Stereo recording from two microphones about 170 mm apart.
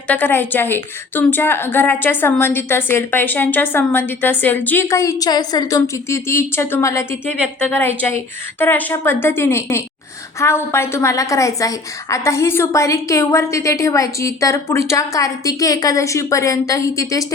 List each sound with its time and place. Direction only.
0.1 s a woman's voice: 10° left (ahead or behind)